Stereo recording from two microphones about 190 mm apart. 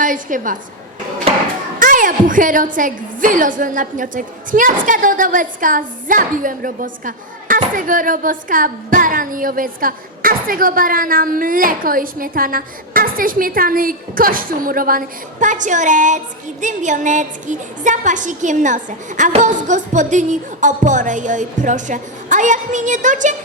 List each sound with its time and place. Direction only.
0.0 s a woman's voice: 45° right (ahead or behind)
1.3 s music: 30° right (ahead or behind)
1.8 s a woman's voice: 45° right (ahead or behind)